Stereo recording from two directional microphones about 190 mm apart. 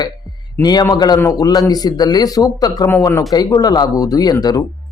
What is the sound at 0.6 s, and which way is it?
A man's voice, 20° left (ahead or behind).